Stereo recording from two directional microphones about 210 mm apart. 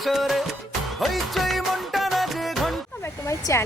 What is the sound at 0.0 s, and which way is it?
Music, centre (ahead or behind).